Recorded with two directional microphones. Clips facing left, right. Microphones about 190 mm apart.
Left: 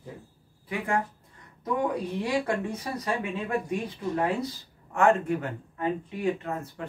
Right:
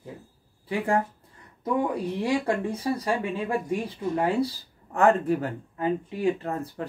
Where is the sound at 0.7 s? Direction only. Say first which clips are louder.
Right 4 dB; 30° right (ahead or behind).